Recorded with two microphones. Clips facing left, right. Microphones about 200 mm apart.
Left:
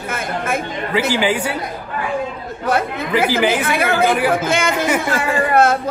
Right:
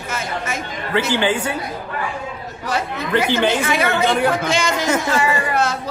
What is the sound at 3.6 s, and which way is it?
Speech, 55° left (ahead or behind).